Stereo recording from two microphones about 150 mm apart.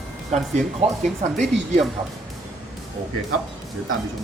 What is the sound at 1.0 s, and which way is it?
Speech, 50° right (ahead or behind).